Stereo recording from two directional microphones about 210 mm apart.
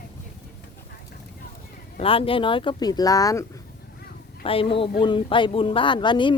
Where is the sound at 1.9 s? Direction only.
25° left (ahead or behind).